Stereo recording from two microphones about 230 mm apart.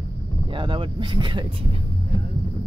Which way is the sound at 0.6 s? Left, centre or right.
Right.